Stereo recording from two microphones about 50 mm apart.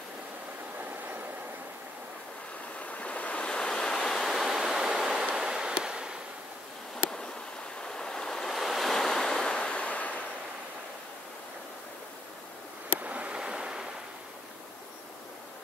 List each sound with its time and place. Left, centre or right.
0.7 s train: right
2.8 s waves: left; by 6.1 s centre
7.8 s waves: centre
13.0 s a sound: right
13.4 s waves: centre